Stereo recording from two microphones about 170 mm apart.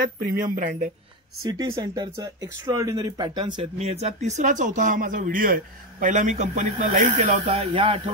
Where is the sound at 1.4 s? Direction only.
25° right (ahead or behind).